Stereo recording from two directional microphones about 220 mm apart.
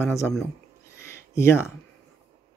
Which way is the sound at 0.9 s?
10° left (ahead or behind).